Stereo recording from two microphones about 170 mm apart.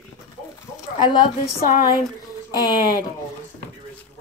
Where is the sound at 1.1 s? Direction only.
55° left (ahead or behind).